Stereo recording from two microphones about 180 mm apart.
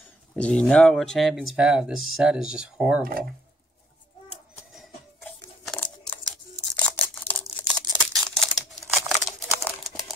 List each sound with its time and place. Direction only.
0.4 s speech: 5° left (ahead or behind)
3.0 s speech: 55° right (ahead or behind)
4.7 s tearing: 5° left (ahead or behind)
6.8 s a sound: 10° left (ahead or behind)
8.5 s crumpling: centre (ahead or behind)